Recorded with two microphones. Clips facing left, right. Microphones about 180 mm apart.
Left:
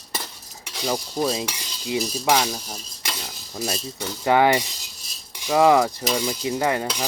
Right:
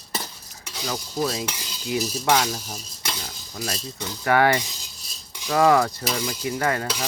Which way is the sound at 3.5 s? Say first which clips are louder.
Left 3 dB; 20° left (ahead or behind).